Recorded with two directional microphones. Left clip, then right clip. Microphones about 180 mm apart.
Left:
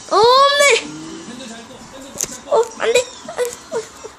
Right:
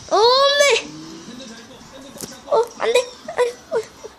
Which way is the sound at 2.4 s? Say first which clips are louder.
Left 2 dB; 15° right (ahead or behind).